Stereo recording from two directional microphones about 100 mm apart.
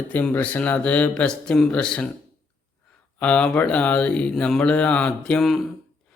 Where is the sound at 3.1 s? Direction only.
10° left (ahead or behind).